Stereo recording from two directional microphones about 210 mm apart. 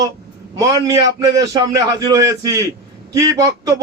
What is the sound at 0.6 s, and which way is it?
Speech, 15° right (ahead or behind).